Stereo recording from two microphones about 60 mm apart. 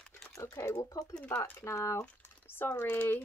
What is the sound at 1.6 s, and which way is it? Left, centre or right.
Speech, left.